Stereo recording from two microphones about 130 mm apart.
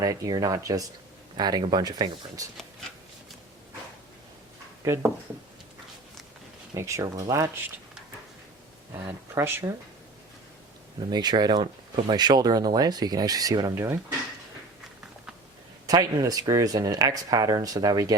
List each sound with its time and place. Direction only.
0.0 s speech: 25° right (ahead or behind)
4.8 s speech: 20° right (ahead or behind)
6.7 s speech: 20° right (ahead or behind)
9.0 s speech: 20° right (ahead or behind)
11.1 s speech: 35° right (ahead or behind)
13.7 s speech: 20° right (ahead or behind)
15.9 s speech: 30° right (ahead or behind)